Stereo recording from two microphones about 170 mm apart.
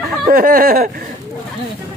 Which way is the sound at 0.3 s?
60° right (ahead or behind).